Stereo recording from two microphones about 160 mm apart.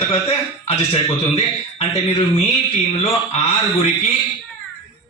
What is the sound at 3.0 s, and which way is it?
Speech, 40° left (ahead or behind).